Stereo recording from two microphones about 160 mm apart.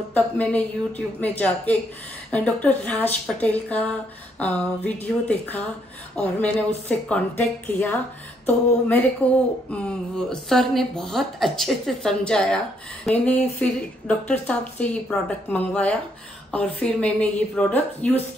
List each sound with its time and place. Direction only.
0.1 s a woman's voice: 10° left (ahead or behind)
2.3 s a woman's voice: 10° left (ahead or behind)